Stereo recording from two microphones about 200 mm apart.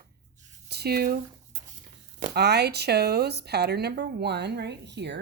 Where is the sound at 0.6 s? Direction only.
55° right (ahead or behind).